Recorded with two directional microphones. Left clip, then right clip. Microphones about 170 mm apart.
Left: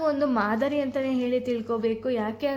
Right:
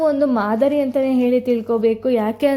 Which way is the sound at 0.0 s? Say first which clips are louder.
Right 7 dB; 25° right (ahead or behind).